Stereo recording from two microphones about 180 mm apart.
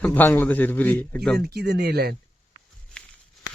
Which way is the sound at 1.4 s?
60° right (ahead or behind).